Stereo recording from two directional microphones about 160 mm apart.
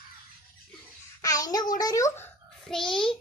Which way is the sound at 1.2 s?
20° left (ahead or behind).